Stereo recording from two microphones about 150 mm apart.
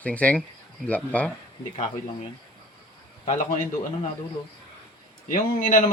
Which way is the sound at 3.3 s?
65° left (ahead or behind).